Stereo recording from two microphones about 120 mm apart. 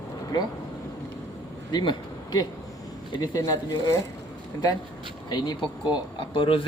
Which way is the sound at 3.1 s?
35° left (ahead or behind).